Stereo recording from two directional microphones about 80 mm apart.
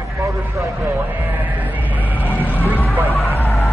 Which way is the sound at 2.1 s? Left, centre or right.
Left.